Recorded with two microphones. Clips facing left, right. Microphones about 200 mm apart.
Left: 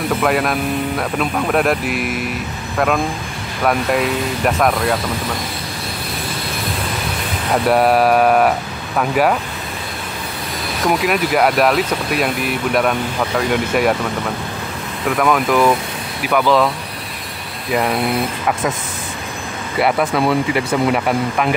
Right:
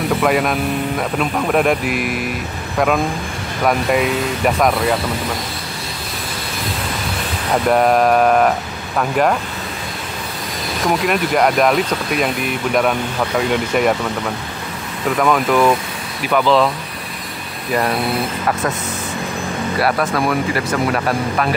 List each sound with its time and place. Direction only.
0.1 s speech: centre (ahead or behind)
3.6 s speech: centre (ahead or behind)
7.6 s speech: 5° left (ahead or behind)
10.9 s speech: 5° left (ahead or behind)
13.5 s speech: centre (ahead or behind)
15.0 s speech: centre (ahead or behind)
19.8 s speech: 20° left (ahead or behind)